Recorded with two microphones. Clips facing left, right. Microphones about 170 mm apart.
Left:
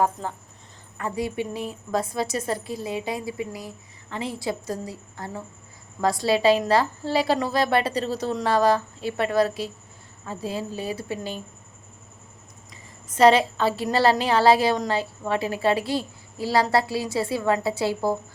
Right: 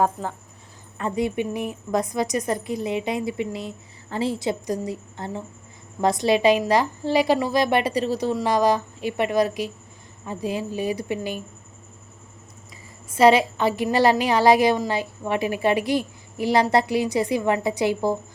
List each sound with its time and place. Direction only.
0.9 s a woman's voice: 20° right (ahead or behind)
13.1 s a woman's voice: 10° right (ahead or behind)